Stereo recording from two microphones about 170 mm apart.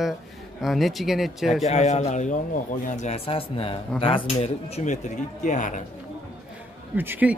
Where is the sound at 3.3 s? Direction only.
35° left (ahead or behind); by 5.8 s 50° left (ahead or behind).